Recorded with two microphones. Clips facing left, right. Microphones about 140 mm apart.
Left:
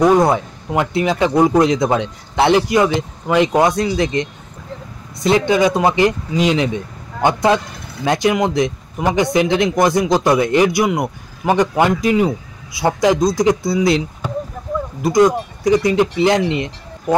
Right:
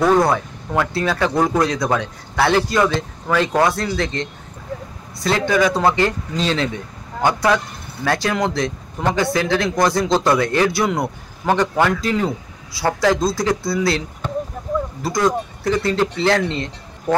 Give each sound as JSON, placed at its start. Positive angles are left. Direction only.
{"t": 0.0, "sound": "speech", "side_deg": 20}